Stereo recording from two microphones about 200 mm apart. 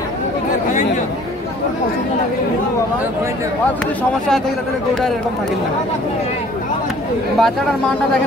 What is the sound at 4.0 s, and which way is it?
Speech, 5° left (ahead or behind).